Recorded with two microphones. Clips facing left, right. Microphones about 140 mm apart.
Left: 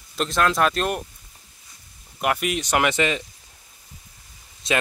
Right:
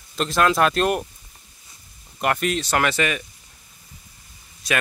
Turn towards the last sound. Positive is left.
turn(degrees=25)  # may be behind; listen again after turning